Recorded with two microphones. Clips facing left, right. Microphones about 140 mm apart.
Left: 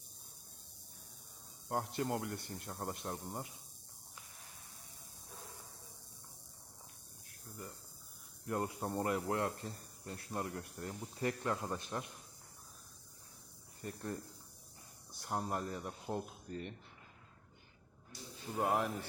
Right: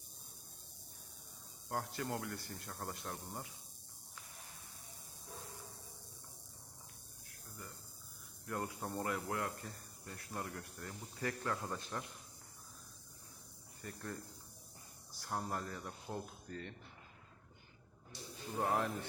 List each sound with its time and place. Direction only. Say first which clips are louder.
1.7 s speech: left 4 dB; 20° left (ahead or behind)
8.4 s speech: left 4 dB; 25° left (ahead or behind)
13.8 s speech: left 4 dB; 25° left (ahead or behind)
15.2 s speech: left 3 dB; 20° left (ahead or behind)
18.5 s a man's voice: left 2 dB; 10° left (ahead or behind)